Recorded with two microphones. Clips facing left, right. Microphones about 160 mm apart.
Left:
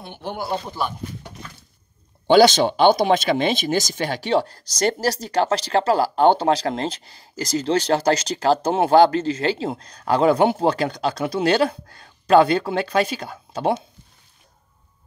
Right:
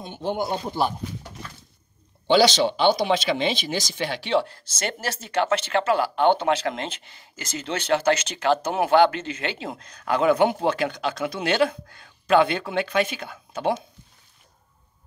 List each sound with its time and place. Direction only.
0.2 s speech: 20° right (ahead or behind)
2.2 s speech: 50° left (ahead or behind)